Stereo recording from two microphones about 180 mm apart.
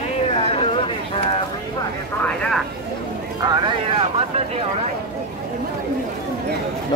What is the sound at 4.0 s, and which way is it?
Speech, 35° right (ahead or behind).